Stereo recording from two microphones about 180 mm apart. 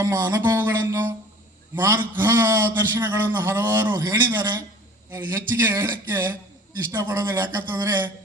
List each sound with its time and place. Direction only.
0.0 s a man's voice: 20° right (ahead or behind)
3.9 s a man's voice: 20° right (ahead or behind)
5.1 s a man's voice: 15° right (ahead or behind)